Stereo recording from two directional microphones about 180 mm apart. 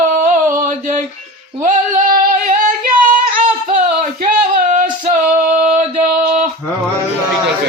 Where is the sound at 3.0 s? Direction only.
50° right (ahead or behind).